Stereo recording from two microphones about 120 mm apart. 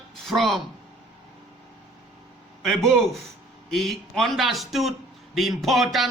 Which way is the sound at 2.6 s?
Centre (ahead or behind).